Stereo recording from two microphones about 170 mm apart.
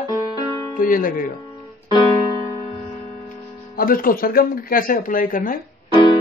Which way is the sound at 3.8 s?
55° left (ahead or behind).